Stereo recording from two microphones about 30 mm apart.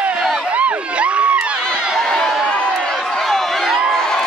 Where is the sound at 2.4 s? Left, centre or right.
Left.